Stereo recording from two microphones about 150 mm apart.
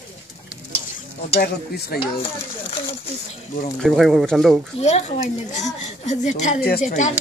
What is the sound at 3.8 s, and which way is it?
Speech, centre (ahead or behind).